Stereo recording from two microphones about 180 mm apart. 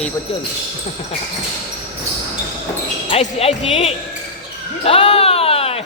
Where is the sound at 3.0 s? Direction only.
40° left (ahead or behind).